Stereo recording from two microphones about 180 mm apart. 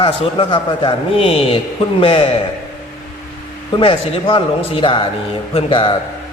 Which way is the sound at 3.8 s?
30° left (ahead or behind).